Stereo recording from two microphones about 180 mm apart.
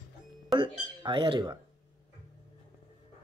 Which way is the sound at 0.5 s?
25° right (ahead or behind).